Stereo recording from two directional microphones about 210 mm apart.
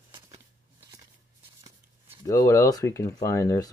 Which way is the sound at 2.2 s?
15° left (ahead or behind).